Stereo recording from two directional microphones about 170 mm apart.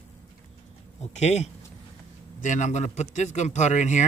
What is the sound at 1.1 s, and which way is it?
Speech, 40° left (ahead or behind).